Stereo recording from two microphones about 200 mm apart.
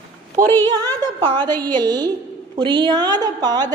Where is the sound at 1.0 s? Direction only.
20° right (ahead or behind).